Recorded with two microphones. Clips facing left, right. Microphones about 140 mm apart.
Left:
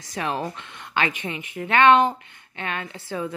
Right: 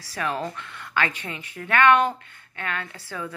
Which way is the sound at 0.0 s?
20° left (ahead or behind).